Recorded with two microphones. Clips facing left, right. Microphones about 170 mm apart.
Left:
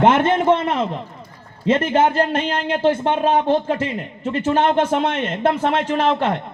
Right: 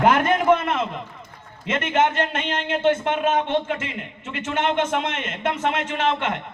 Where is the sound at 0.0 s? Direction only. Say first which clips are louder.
Left 3 dB; 25° left (ahead or behind).